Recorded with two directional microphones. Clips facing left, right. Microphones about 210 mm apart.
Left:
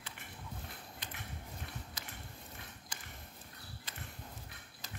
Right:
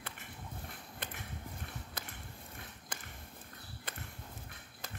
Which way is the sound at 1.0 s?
55° right (ahead or behind).